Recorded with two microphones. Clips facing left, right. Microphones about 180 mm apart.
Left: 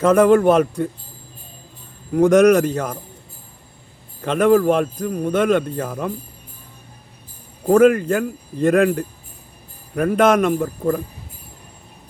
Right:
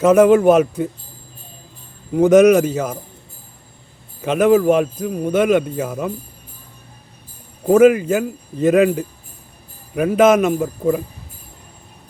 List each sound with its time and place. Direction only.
0.0 s speech: 10° right (ahead or behind)
2.1 s speech: 5° right (ahead or behind)
4.2 s speech: 5° right (ahead or behind)
7.7 s speech: 5° right (ahead or behind)